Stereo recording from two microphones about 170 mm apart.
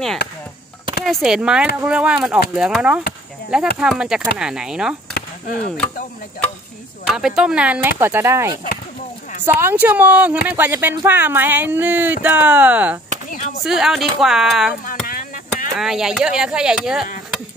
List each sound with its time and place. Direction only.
1.0 s speech: centre (ahead or behind)
5.1 s chop: 65° left (ahead or behind)
7.1 s speech: 5° right (ahead or behind)
9.6 s speech: 15° right (ahead or behind)
13.3 s speech: 45° left (ahead or behind)
13.7 s speech: centre (ahead or behind)
14.9 s chop: 55° left (ahead or behind)
15.7 s speech: centre (ahead or behind)